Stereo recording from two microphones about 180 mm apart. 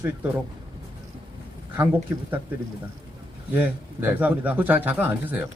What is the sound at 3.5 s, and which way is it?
A man's voice, 10° right (ahead or behind).